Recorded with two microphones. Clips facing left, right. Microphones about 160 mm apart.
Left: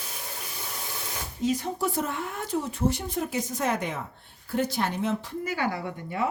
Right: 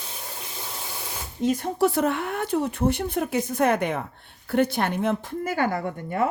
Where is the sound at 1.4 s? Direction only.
55° right (ahead or behind).